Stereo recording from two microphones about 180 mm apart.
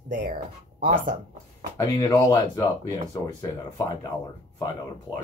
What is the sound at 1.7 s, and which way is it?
Speech, 20° left (ahead or behind).